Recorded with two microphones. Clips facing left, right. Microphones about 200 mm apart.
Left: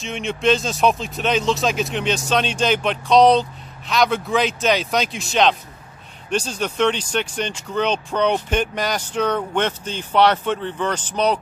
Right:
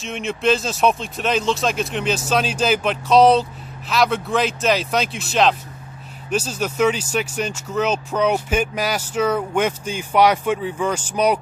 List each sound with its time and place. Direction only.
0.0 s speech: centre (ahead or behind)